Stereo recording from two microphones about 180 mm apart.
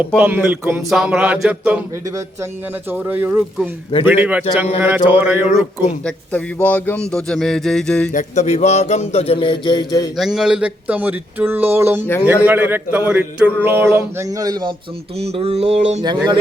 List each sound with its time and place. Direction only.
0.2 s speech: 10° right (ahead or behind)
2.0 s speech: 15° right (ahead or behind)
6.1 s speech: 10° left (ahead or behind)
8.1 s a sound: 40° left (ahead or behind); by 10.1 s 20° left (ahead or behind)
10.2 s speech: centre (ahead or behind); by 14.8 s 25° right (ahead or behind)
15.2 s a sound: 35° right (ahead or behind)
16.0 s speech: 25° right (ahead or behind)